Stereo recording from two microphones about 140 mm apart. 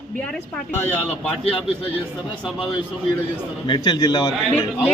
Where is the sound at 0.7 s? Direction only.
15° left (ahead or behind).